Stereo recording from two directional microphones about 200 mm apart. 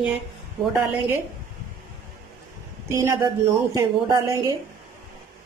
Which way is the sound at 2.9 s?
15° right (ahead or behind).